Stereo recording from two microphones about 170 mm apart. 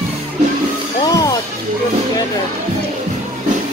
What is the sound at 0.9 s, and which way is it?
Music, 20° left (ahead or behind).